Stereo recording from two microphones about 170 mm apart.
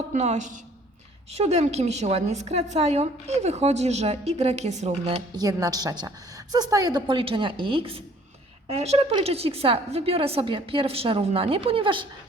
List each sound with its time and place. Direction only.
0.1 s a woman's voice: 45° right (ahead or behind)
5.4 s a woman's voice: 20° right (ahead or behind)